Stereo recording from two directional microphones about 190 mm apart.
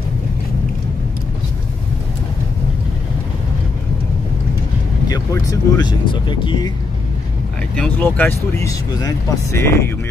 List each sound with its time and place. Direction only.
5.0 s speech: 20° left (ahead or behind)
7.7 s speech: 5° left (ahead or behind)